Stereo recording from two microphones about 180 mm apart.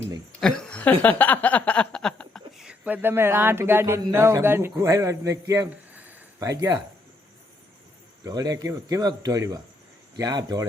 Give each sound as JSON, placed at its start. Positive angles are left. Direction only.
{"t": 0.3, "sound": "a sound", "side_deg": 5}
{"t": 6.5, "sound": "speech", "side_deg": -20}
{"t": 8.2, "sound": "speech", "side_deg": -20}